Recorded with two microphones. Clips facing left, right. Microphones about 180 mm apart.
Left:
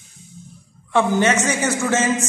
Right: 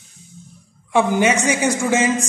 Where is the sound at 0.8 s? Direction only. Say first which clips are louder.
Right 1 dB; 10° right (ahead or behind).